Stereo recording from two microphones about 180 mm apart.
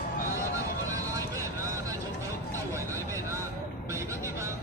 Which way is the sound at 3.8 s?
15° right (ahead or behind).